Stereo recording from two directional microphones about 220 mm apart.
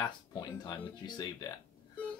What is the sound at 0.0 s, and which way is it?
Speech, 15° left (ahead or behind).